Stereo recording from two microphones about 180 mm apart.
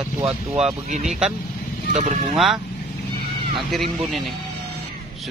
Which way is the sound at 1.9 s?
40° right (ahead or behind).